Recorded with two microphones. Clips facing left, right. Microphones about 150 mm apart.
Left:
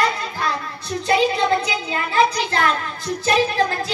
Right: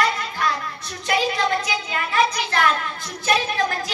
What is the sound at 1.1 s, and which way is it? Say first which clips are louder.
A child's voice: left 4 dB; 30° left (ahead or behind).